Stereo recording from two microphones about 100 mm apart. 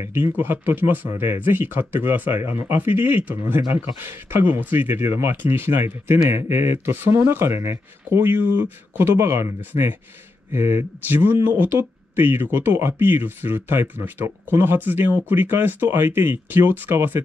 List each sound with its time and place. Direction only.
0.0 s speech: 25° right (ahead or behind)
9.7 s speech: 35° right (ahead or behind)
10.5 s speech: 25° right (ahead or behind)